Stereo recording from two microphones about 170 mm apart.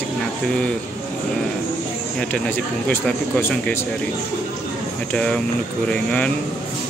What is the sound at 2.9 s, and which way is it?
Speech, 10° left (ahead or behind).